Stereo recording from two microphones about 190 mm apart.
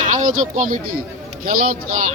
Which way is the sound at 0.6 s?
45° right (ahead or behind).